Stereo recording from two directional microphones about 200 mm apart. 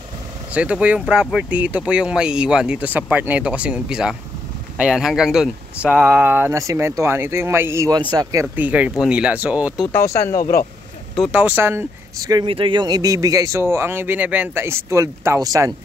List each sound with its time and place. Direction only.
0.5 s speech: 5° right (ahead or behind)
9.8 s speech: 15° left (ahead or behind)
10.3 s speech: 45° left (ahead or behind)
11.1 s speech: 10° right (ahead or behind)